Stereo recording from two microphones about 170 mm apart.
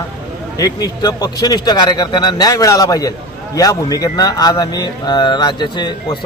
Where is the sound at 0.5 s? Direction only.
20° left (ahead or behind).